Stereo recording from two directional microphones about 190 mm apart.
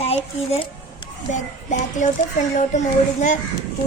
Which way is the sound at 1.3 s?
40° left (ahead or behind).